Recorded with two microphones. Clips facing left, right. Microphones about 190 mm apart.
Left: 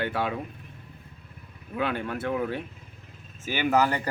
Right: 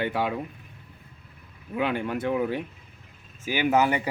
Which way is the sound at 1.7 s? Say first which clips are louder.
Right 2 dB; 10° right (ahead or behind).